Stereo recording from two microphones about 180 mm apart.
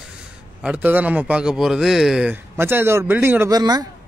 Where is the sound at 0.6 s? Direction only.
10° right (ahead or behind).